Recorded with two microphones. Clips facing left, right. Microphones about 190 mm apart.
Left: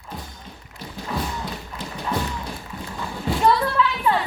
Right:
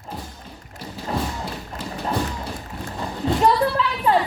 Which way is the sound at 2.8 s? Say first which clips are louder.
Right 3 dB; 35° right (ahead or behind).